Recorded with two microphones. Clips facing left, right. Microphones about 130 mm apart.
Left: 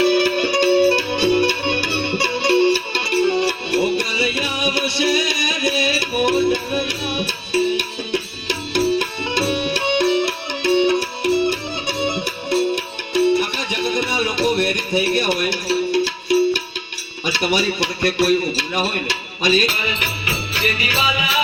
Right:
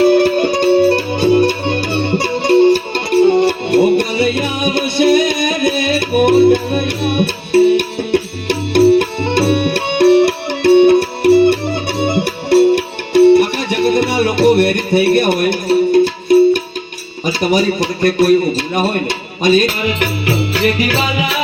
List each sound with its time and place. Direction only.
0.0 s music: 50° right (ahead or behind)
17.2 s a man's voice: 45° right (ahead or behind)
20.2 s music: 60° right (ahead or behind)